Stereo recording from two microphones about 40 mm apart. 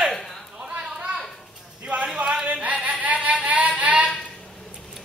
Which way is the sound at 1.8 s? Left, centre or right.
Right.